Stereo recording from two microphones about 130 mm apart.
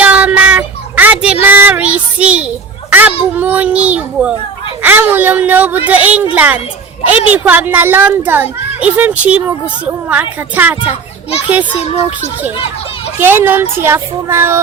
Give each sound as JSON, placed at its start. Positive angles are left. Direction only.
{"t": 0.0, "sound": "child singing", "side_deg": -10}
{"t": 3.3, "sound": "a child's voice", "side_deg": -10}
{"t": 11.8, "sound": "speech", "side_deg": 55}
{"t": 13.1, "sound": "a child's voice", "side_deg": -15}